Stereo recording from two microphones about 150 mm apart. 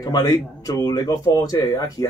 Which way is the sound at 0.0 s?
25° left (ahead or behind).